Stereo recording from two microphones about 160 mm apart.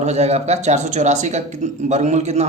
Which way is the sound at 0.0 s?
45° right (ahead or behind).